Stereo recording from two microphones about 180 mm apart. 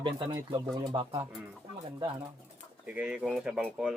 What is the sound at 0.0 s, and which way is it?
Speech, 25° right (ahead or behind).